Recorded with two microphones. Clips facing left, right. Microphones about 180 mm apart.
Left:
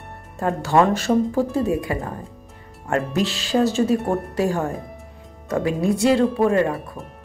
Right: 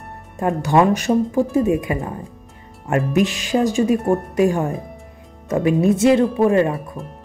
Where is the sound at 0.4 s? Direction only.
20° right (ahead or behind).